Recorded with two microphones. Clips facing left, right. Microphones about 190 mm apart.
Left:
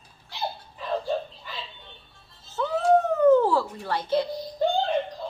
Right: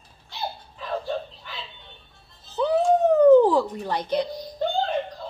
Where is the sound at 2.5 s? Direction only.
15° right (ahead or behind).